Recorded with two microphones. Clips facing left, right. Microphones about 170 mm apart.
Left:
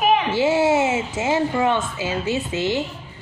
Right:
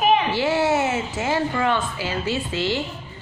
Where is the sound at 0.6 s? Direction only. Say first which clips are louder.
Left 2 dB; 15° left (ahead or behind).